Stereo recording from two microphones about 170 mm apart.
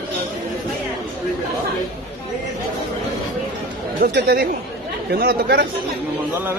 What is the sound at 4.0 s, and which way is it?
Speech, 65° right (ahead or behind).